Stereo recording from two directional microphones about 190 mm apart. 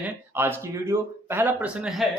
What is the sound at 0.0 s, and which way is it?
Speech, 10° right (ahead or behind).